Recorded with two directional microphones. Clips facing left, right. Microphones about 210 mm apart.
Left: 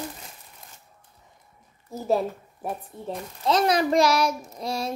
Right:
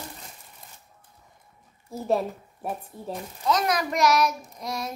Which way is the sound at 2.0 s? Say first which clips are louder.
Left 1 dB; centre (ahead or behind).